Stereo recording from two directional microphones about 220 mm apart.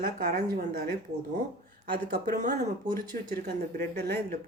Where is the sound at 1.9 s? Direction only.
40° right (ahead or behind).